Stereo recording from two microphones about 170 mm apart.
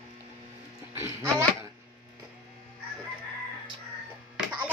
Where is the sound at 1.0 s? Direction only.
15° right (ahead or behind).